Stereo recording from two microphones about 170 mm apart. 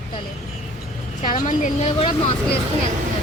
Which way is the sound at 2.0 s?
30° left (ahead or behind).